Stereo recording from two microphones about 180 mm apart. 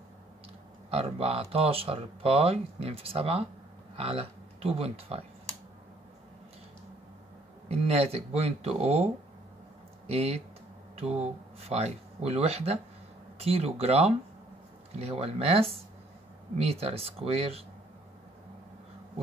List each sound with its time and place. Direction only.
0.8 s speech: 30° right (ahead or behind)
7.6 s speech: 35° right (ahead or behind)